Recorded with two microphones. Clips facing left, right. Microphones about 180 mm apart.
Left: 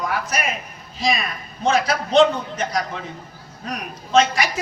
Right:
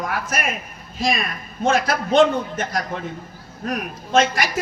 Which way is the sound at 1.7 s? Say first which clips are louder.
Right 1 dB; 50° right (ahead or behind).